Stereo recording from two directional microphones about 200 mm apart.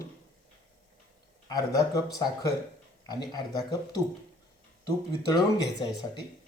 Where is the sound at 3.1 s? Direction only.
20° left (ahead or behind).